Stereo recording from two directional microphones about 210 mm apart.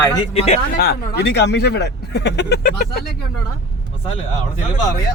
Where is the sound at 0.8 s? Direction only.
50° left (ahead or behind).